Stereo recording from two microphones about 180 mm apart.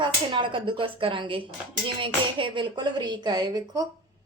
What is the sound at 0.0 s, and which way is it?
A woman's voice, 25° right (ahead or behind).